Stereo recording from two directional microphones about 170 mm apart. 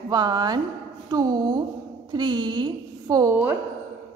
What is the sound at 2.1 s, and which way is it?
A woman's voice, 25° right (ahead or behind).